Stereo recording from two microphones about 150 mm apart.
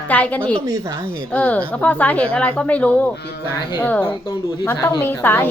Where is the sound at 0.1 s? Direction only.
10° left (ahead or behind).